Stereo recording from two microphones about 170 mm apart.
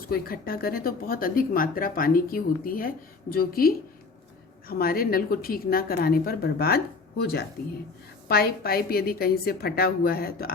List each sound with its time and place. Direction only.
0.1 s speech: 60° left (ahead or behind)
4.7 s speech: 60° left (ahead or behind)